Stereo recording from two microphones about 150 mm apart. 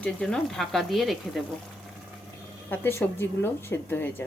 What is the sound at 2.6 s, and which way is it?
Speech, 15° left (ahead or behind).